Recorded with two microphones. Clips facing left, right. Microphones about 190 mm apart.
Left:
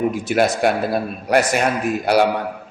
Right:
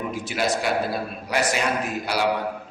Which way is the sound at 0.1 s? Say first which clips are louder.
Left 7 dB; 55° left (ahead or behind).